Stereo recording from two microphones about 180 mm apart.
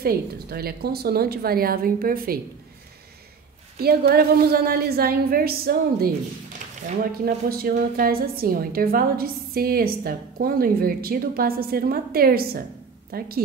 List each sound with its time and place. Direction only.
0.0 s a woman's voice: 55° right (ahead or behind)
3.8 s a woman's voice: 60° right (ahead or behind)
7.2 s a woman's voice: 55° right (ahead or behind)